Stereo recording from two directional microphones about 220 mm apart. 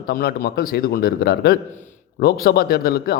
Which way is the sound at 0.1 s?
45° left (ahead or behind).